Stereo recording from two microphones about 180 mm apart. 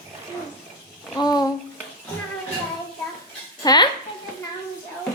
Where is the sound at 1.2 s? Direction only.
20° left (ahead or behind).